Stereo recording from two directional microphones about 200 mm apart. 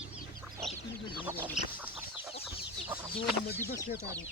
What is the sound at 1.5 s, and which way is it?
Chicken, 10° right (ahead or behind).